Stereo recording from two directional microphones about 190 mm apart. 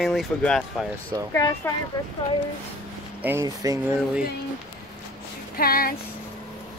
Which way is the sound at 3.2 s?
15° right (ahead or behind).